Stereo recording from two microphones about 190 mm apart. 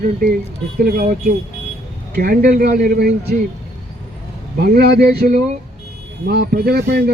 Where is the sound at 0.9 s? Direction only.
50° right (ahead or behind).